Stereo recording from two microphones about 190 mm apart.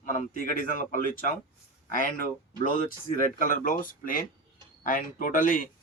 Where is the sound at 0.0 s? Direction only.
45° left (ahead or behind).